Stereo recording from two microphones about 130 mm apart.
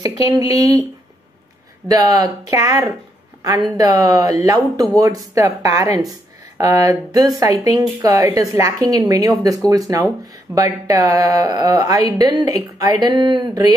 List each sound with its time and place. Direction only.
0.3 s speech: 30° right (ahead or behind)
1.9 s speech: 30° right (ahead or behind)